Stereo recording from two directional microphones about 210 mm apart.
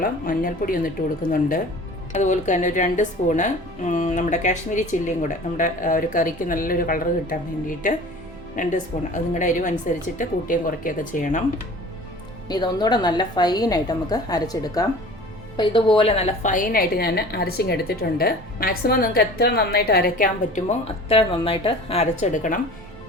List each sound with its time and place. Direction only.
0.0 s a woman's voice: 40° left (ahead or behind)
12.5 s a woman's voice: 20° left (ahead or behind); by 22.6 s 40° left (ahead or behind)